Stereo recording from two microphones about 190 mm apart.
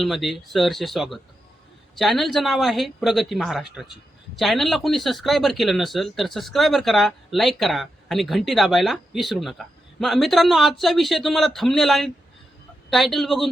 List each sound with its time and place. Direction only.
0.0 s speech: centre (ahead or behind)